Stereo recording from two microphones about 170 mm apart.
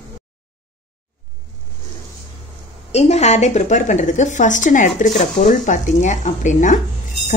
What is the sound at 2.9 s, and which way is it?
A woman's voice, 40° left (ahead or behind).